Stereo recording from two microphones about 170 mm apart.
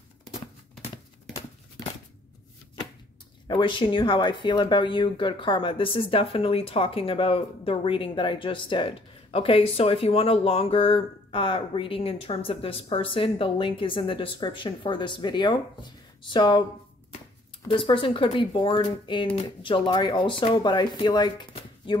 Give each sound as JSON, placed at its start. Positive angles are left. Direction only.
{"t": 3.4, "sound": "speech", "side_deg": 30}
{"t": 17.6, "sound": "speech", "side_deg": 30}